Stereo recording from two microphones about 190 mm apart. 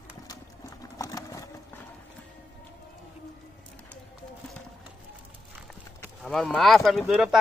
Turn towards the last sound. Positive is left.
turn(degrees=0)  # may be behind; listen again after turning